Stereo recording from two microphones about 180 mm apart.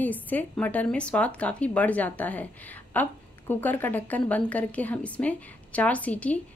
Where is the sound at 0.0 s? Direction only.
10° left (ahead or behind).